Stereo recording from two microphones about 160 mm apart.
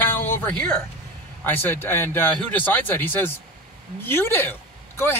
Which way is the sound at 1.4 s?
15° left (ahead or behind).